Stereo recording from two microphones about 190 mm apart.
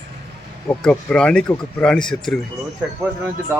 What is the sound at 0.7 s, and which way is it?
Speech, 5° left (ahead or behind).